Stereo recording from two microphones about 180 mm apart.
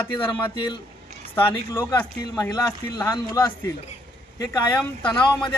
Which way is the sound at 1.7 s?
15° left (ahead or behind).